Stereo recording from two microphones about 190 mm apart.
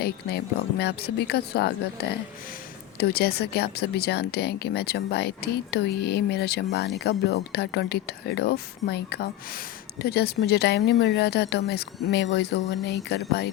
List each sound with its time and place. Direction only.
0.0 s speech: 60° left (ahead or behind)